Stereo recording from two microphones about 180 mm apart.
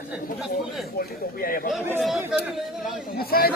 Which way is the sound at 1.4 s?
55° left (ahead or behind).